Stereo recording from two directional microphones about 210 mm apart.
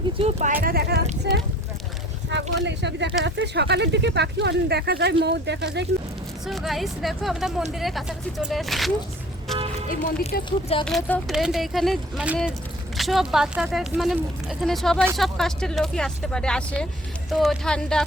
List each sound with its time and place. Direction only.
0.2 s speech: 30° right (ahead or behind)
0.6 s speech: 45° right (ahead or behind)
1.3 s a sound: 55° right (ahead or behind)
2.6 s speech: 55° right (ahead or behind)
6.4 s speech: centre (ahead or behind)
9.9 s speech: 40° left (ahead or behind)
10.8 s speech: centre (ahead or behind)